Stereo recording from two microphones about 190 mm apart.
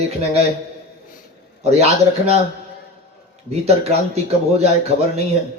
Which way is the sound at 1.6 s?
35° right (ahead or behind).